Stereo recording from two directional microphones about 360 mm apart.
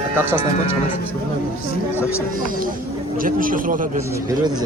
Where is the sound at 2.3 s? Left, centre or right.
Right.